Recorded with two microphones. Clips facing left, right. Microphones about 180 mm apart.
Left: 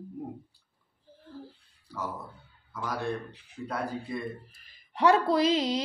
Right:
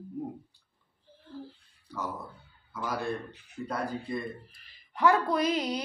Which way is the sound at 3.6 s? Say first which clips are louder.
Even; centre (ahead or behind).